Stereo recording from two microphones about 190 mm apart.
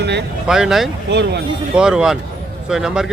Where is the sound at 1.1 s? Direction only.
65° right (ahead or behind).